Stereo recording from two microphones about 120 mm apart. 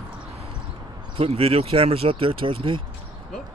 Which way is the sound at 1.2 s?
55° right (ahead or behind).